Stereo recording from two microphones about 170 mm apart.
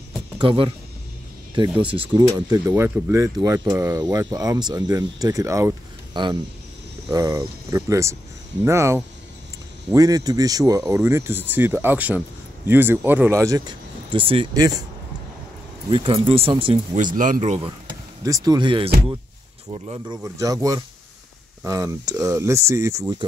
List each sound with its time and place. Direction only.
0.4 s speech: 30° right (ahead or behind)
1.8 s speech: 30° right (ahead or behind)
2.3 s speech: 20° right (ahead or behind)
14.1 s speech: 30° right (ahead or behind)
15.9 s speech: 30° right (ahead or behind)
17.0 s speech: 50° right (ahead or behind)
18.2 s speech: 20° right (ahead or behind)
20.3 s speech: 20° right (ahead or behind)